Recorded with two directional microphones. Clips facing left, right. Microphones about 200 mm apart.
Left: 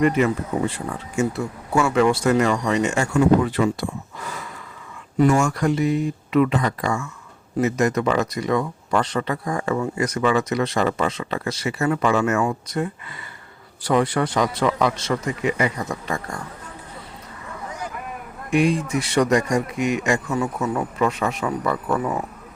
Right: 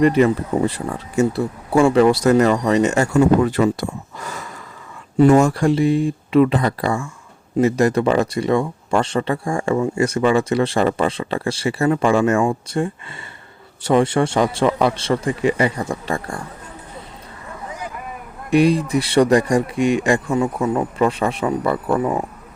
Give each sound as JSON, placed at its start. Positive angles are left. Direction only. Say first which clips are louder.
{"t": 0.0, "sound": "speech", "louder": "right 4 dB", "side_deg": -35}
{"t": 5.1, "sound": "speech", "louder": "right 5 dB", "side_deg": -30}
{"t": 18.5, "sound": "speech", "louder": "right 4 dB", "side_deg": -35}